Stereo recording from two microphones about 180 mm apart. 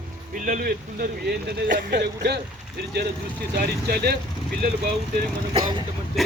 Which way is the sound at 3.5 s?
60° right (ahead or behind).